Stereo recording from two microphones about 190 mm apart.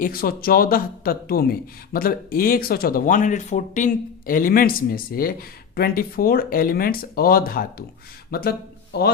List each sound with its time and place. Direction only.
0.0 s speech: 50° left (ahead or behind)